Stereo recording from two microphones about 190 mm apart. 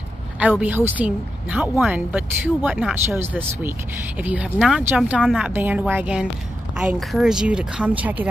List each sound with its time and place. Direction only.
0.4 s a woman's voice: 5° right (ahead or behind)